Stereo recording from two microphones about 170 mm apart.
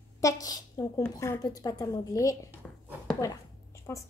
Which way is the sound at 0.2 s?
20° left (ahead or behind).